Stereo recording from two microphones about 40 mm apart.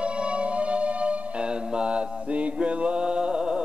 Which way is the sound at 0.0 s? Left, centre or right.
Right.